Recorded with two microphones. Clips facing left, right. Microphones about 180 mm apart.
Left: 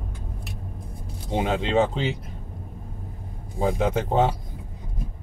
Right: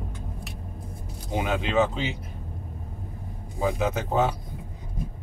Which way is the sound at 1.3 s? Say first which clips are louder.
Left 3 dB; 25° left (ahead or behind).